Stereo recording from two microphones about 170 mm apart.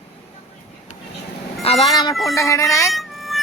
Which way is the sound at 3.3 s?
Centre (ahead or behind).